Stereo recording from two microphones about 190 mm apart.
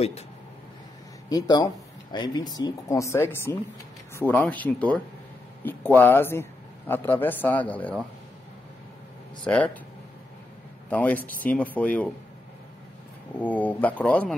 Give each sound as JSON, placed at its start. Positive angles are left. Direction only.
{"t": 1.3, "sound": "speech", "side_deg": 20}
{"t": 9.4, "sound": "speech", "side_deg": 5}
{"t": 10.9, "sound": "speech", "side_deg": 10}
{"t": 13.4, "sound": "speech", "side_deg": 10}